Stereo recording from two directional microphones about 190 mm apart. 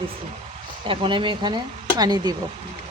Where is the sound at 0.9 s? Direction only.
25° right (ahead or behind).